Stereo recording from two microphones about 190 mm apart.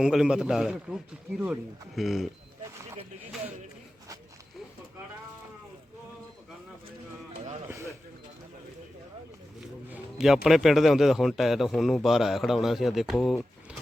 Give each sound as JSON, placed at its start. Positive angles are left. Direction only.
{"t": 0.0, "sound": "a man's voice", "side_deg": -5}
{"t": 2.0, "sound": "a man's voice", "side_deg": 0}
{"t": 9.6, "sound": "a man's voice", "side_deg": -5}